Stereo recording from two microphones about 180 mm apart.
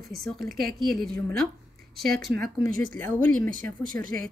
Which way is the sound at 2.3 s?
50° right (ahead or behind).